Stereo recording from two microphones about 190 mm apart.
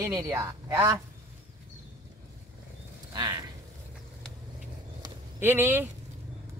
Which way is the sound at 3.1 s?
20° right (ahead or behind).